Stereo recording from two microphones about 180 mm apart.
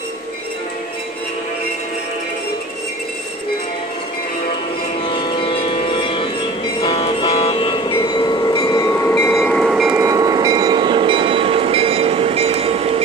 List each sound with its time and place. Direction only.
5.0 s music: 25° left (ahead or behind)
7.9 s train: 20° left (ahead or behind)
9.4 s train: centre (ahead or behind)
9.9 s train: 20° right (ahead or behind); by 12.8 s 35° right (ahead or behind)